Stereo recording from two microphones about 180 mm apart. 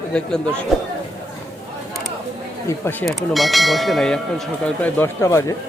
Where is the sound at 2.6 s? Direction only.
10° left (ahead or behind).